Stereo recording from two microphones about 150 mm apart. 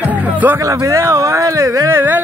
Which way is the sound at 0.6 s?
20° right (ahead or behind).